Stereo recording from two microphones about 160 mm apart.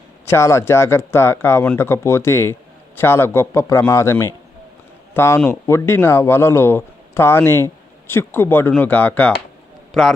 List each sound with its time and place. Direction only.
0.3 s a man's voice: 15° left (ahead or behind)